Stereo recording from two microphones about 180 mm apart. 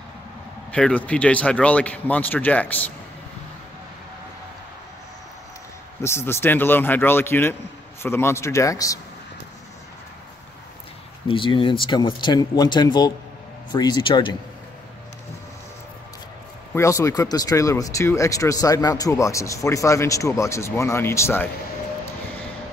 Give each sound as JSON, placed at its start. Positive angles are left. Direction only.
{"t": 0.7, "sound": "speech", "side_deg": 5}
{"t": 6.0, "sound": "speech", "side_deg": 15}
{"t": 11.2, "sound": "speech", "side_deg": 30}
{"t": 16.7, "sound": "speech", "side_deg": 15}